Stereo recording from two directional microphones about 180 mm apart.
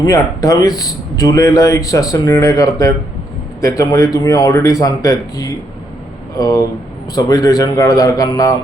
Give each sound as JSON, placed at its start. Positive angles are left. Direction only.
{"t": 0.0, "sound": "speech", "side_deg": 20}